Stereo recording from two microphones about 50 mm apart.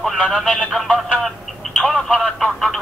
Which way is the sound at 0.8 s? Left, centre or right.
Centre.